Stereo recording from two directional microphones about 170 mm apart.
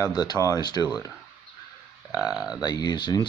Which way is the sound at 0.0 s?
25° left (ahead or behind).